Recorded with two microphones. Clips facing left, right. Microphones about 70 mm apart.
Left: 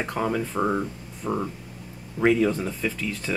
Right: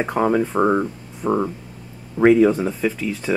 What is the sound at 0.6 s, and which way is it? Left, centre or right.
Speech, right.